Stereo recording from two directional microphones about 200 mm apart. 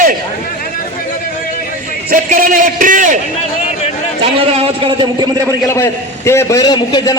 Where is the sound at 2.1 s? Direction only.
45° right (ahead or behind).